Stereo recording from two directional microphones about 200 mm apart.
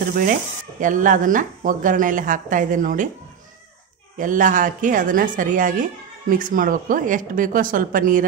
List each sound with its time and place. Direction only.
0.0 s speech: 45° right (ahead or behind)
4.2 s speech: 40° right (ahead or behind)